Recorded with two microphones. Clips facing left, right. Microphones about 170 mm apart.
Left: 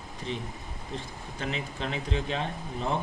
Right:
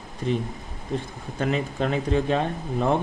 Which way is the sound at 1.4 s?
50° right (ahead or behind).